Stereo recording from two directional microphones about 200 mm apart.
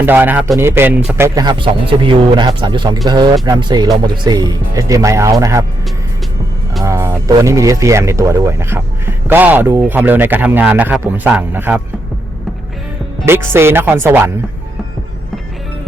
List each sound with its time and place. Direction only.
0.0 s speech: 10° right (ahead or behind)
6.8 s speech: 15° right (ahead or behind)
13.2 s speech: 10° right (ahead or behind)